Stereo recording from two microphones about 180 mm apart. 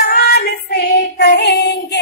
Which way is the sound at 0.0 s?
60° left (ahead or behind).